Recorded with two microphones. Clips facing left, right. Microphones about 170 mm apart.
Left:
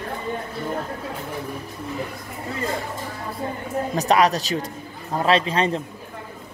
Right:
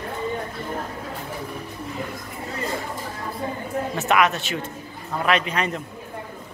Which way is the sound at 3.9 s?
35° left (ahead or behind).